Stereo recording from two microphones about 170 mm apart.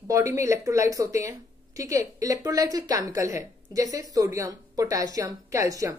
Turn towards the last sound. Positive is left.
turn(degrees=-20)  # may be behind; listen again after turning